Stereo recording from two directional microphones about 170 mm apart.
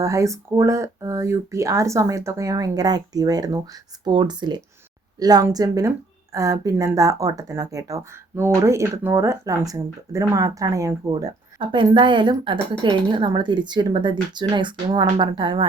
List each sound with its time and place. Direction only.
0.0 s speech: 20° right (ahead or behind)